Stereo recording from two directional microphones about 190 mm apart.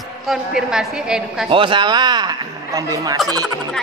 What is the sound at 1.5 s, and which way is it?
Speech, 25° right (ahead or behind).